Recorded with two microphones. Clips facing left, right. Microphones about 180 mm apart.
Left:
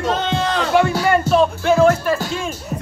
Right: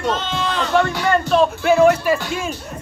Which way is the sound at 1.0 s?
5° left (ahead or behind).